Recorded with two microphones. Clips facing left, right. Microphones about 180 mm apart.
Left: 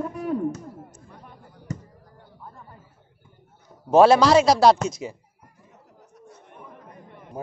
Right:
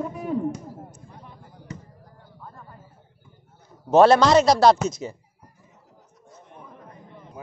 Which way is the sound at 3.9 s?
5° left (ahead or behind).